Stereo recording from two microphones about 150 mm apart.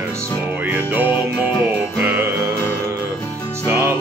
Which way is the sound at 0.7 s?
10° right (ahead or behind).